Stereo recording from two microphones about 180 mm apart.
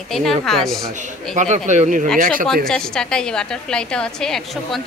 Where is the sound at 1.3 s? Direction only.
40° right (ahead or behind).